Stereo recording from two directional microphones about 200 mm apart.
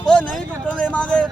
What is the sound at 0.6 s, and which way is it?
Speech, 5° left (ahead or behind).